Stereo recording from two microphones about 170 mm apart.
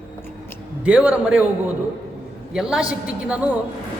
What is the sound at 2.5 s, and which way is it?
Speech, 5° right (ahead or behind).